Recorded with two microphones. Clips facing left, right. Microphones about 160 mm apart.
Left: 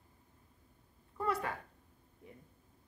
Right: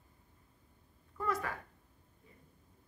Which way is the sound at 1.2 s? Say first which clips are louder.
Left 1 dB; 30° left (ahead or behind).